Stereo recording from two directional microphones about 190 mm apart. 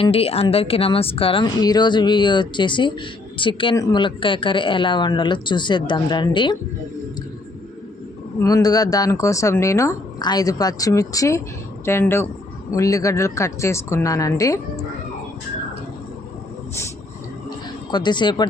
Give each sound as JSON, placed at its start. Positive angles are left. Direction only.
{"t": 0.0, "sound": "speech", "side_deg": 30}
{"t": 8.4, "sound": "a woman's voice", "side_deg": 20}
{"t": 17.9, "sound": "speech", "side_deg": 25}